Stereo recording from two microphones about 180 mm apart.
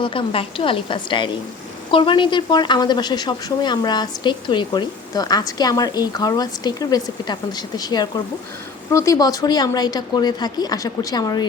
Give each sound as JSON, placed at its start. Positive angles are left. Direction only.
{"t": 0.0, "sound": "speech", "side_deg": 30}